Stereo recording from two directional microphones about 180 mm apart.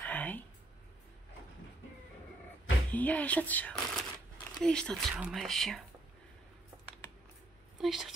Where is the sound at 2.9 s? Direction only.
10° left (ahead or behind).